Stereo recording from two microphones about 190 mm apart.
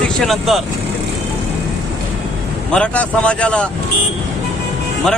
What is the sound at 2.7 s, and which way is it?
Speech, 5° left (ahead or behind).